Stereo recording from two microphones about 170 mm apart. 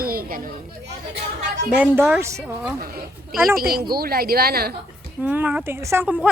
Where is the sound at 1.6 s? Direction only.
10° right (ahead or behind).